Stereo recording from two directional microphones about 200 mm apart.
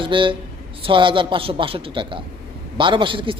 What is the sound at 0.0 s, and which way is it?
A man's voice, 25° right (ahead or behind).